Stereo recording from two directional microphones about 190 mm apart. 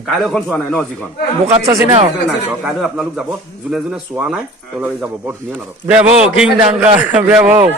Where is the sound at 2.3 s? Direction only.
5° right (ahead or behind).